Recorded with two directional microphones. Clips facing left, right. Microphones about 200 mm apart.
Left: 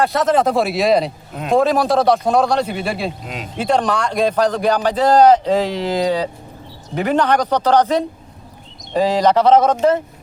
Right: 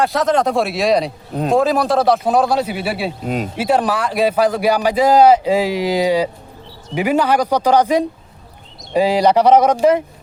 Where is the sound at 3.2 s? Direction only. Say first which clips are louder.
Right 9 dB; 45° right (ahead or behind).